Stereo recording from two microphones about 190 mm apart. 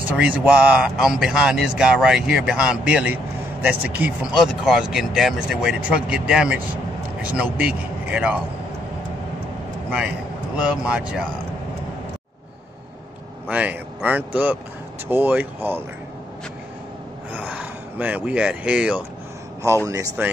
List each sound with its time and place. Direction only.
0.1 s a man's voice: 5° right (ahead or behind)
9.8 s a man's voice: 5° right (ahead or behind)
13.5 s speech: 10° right (ahead or behind)
17.3 s speech: 10° right (ahead or behind)
19.9 s speech: 15° right (ahead or behind)